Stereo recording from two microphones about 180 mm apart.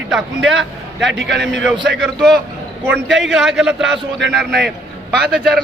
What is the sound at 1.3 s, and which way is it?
Speech, 70° right (ahead or behind).